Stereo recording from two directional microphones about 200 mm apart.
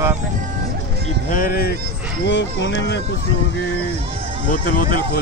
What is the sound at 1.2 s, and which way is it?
Speech, 45° left (ahead or behind).